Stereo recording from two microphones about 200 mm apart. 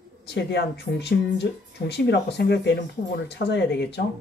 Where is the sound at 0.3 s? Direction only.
55° left (ahead or behind).